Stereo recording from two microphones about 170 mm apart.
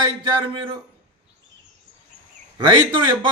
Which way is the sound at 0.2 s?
30° right (ahead or behind).